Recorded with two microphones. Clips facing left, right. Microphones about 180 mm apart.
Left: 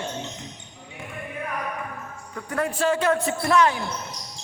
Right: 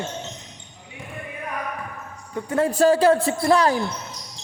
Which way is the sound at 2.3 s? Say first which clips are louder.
Right 6 dB; 25° right (ahead or behind).